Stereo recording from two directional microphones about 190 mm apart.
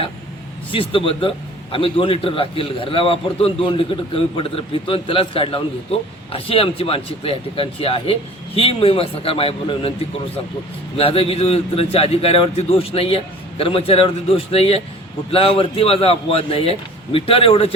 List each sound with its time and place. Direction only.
0.7 s a man's voice: 25° left (ahead or behind)
10.9 s a man's voice: 30° left (ahead or behind)